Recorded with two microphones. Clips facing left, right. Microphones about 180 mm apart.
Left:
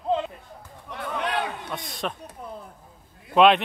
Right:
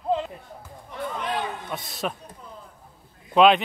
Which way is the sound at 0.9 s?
70° left (ahead or behind).